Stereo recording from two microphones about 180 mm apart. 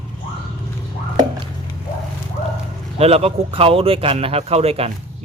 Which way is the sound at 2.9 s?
35° right (ahead or behind).